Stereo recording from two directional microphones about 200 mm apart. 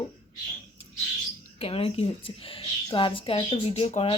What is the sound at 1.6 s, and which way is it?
A woman's voice, 30° left (ahead or behind).